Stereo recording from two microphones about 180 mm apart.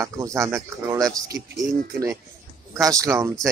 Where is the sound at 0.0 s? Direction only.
15° right (ahead or behind).